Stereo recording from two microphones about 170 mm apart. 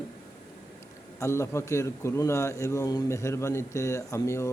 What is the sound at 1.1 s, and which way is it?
A man's voice, 15° left (ahead or behind).